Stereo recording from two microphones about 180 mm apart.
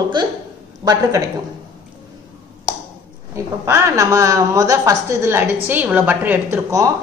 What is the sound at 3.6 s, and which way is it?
A woman's voice, 15° right (ahead or behind).